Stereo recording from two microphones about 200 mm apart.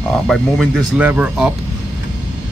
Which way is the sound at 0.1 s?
Centre (ahead or behind).